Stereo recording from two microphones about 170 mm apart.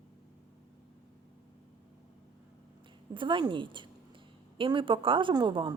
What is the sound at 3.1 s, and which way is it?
Speech, 30° right (ahead or behind).